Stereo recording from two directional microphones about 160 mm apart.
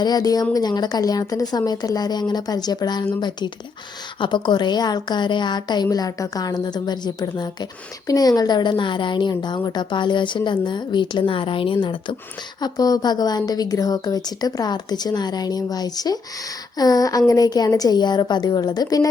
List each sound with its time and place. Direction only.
0.0 s a woman's voice: 25° left (ahead or behind)